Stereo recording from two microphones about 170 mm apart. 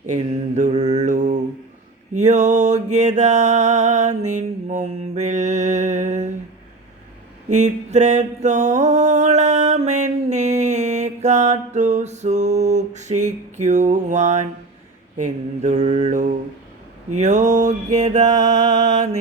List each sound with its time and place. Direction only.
0.0 s mantra: 45° right (ahead or behind)
7.5 s mantra: 45° right (ahead or behind)